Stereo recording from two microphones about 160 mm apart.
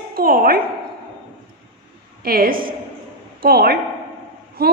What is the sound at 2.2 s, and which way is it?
A woman's voice, 65° right (ahead or behind).